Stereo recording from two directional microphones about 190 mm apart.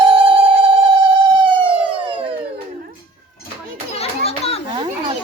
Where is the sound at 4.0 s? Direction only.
35° left (ahead or behind).